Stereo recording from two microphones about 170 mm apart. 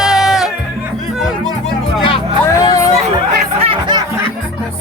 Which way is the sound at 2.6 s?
20° left (ahead or behind).